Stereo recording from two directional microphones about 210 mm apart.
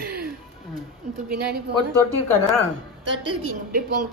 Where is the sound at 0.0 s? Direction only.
50° right (ahead or behind).